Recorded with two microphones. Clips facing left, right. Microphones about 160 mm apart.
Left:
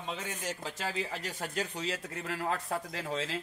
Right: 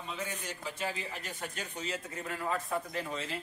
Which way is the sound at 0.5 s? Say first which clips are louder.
Left 1 dB; 90° left.